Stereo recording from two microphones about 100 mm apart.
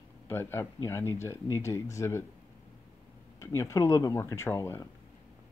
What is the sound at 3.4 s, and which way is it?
Speech, 30° left (ahead or behind).